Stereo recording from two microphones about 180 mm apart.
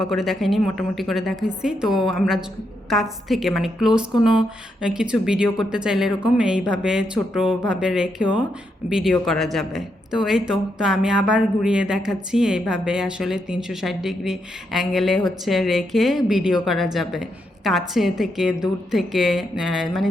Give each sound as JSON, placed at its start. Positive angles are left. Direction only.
{"t": 0.0, "sound": "a man's voice", "side_deg": 0}